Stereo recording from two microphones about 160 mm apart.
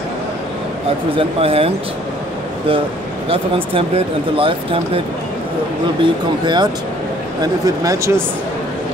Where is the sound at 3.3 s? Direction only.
35° right (ahead or behind).